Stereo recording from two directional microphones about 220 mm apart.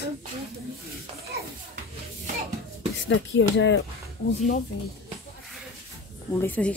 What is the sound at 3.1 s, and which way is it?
Speech, 55° left (ahead or behind).